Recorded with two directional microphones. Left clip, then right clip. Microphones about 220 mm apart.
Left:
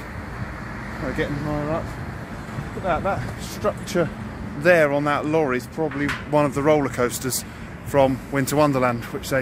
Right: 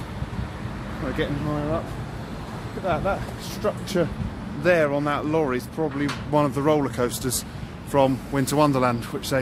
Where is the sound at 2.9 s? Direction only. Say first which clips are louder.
Left 1 dB; 15° left (ahead or behind).